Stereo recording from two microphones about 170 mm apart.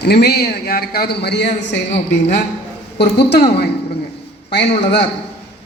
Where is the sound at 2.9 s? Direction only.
75° left (ahead or behind).